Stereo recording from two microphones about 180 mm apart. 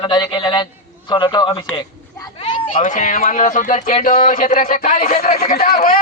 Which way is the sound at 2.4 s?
45° left (ahead or behind).